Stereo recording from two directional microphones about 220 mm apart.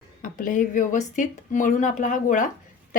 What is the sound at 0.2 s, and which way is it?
Speech, 35° left (ahead or behind).